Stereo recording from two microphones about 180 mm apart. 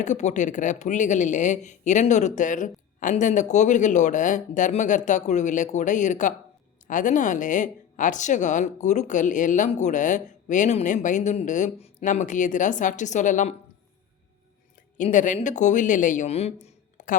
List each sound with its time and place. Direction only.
0.0 s speech: 40° left (ahead or behind)
14.9 s a man's voice: 45° left (ahead or behind)